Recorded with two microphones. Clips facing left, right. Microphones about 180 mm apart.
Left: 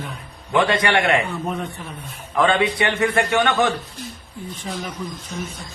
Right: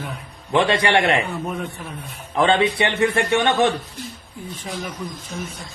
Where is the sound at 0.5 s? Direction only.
25° right (ahead or behind).